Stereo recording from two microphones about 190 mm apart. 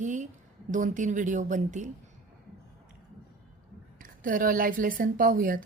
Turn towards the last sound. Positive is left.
turn(degrees=-45)  # may be behind; listen again after turning